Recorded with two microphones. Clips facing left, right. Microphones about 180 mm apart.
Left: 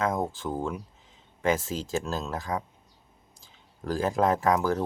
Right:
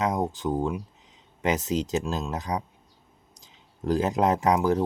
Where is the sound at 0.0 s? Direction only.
15° right (ahead or behind).